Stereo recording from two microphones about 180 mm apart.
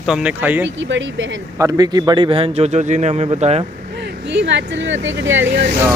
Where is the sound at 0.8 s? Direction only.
90° right.